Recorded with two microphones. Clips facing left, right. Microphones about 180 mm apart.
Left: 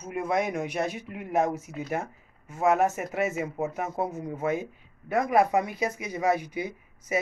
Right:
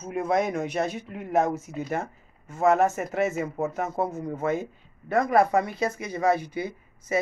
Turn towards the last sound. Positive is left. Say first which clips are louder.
# right 2 dB
turn(degrees=15)  # may be behind; listen again after turning